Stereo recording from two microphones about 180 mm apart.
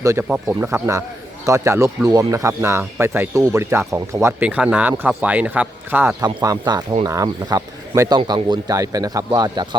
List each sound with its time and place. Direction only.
0.0 s speech: 20° right (ahead or behind)
6.2 s speech: 20° right (ahead or behind)